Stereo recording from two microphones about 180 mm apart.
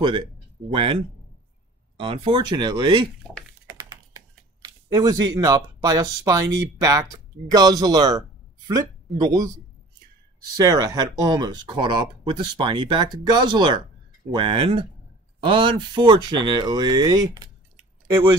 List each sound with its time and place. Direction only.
0.7 s speech: 30° right (ahead or behind)
2.0 s speech: 30° right (ahead or behind)
3.6 s typing: 15° right (ahead or behind)
6.8 s speech: 20° right (ahead or behind)
10.6 s speech: 20° right (ahead or behind)